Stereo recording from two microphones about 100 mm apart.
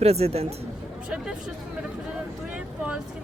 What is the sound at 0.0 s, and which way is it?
Speech, 90° right.